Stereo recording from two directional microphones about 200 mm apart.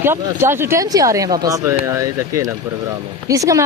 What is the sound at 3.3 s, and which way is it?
Speech, 15° right (ahead or behind).